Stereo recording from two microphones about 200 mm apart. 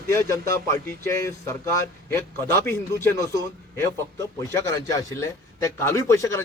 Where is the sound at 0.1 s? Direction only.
15° left (ahead or behind).